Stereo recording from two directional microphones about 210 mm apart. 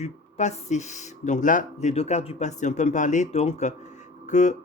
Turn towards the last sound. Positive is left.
turn(degrees=35)  # may be behind; listen again after turning